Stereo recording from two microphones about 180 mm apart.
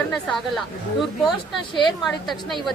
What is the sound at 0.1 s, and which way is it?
A woman's voice, centre (ahead or behind).